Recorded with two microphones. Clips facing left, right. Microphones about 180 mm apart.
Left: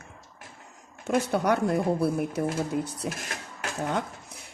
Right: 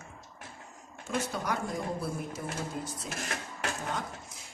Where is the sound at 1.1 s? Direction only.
65° left (ahead or behind).